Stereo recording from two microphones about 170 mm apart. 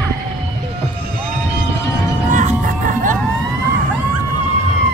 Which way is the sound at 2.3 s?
45° right (ahead or behind).